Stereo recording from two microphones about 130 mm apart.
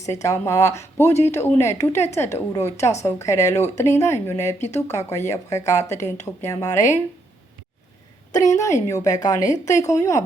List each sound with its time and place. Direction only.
0.0 s a woman's voice: 25° left (ahead or behind)
8.3 s a woman's voice: 25° left (ahead or behind)